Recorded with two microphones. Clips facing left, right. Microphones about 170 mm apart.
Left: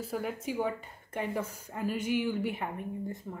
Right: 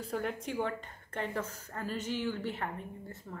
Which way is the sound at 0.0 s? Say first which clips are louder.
Left 1 dB; 5° left (ahead or behind).